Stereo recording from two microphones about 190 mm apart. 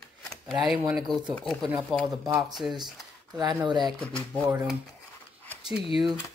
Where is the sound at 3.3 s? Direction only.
20° right (ahead or behind).